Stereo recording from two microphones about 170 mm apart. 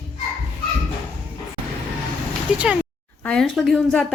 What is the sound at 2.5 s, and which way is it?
A woman's voice, 5° right (ahead or behind).